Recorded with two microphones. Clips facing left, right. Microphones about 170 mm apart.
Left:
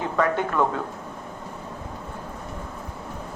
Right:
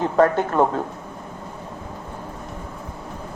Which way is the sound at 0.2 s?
40° right (ahead or behind).